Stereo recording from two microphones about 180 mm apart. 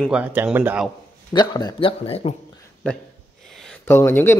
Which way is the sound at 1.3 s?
25° left (ahead or behind).